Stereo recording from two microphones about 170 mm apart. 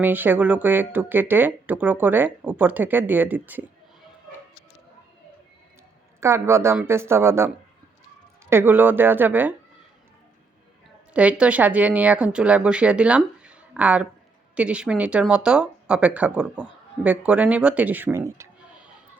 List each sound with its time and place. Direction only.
0.0 s speech: 10° right (ahead or behind)
6.1 s speech: 15° right (ahead or behind)
11.1 s speech: 5° right (ahead or behind)